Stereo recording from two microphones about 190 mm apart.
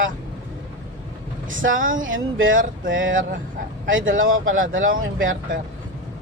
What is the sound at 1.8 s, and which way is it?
Speech, 45° right (ahead or behind).